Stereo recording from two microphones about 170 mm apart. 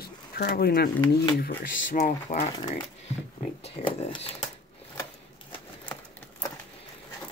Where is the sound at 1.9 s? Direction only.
50° left (ahead or behind).